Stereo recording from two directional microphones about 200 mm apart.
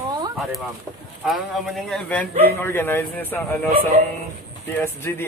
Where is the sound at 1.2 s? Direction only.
Centre (ahead or behind).